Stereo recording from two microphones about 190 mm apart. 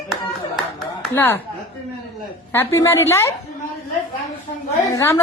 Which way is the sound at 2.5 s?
15° left (ahead or behind).